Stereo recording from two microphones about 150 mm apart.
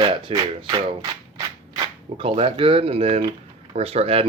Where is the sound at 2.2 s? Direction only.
35° right (ahead or behind).